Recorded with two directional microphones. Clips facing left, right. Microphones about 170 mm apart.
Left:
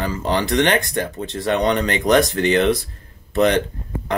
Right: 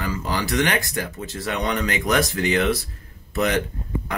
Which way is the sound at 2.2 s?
Centre (ahead or behind).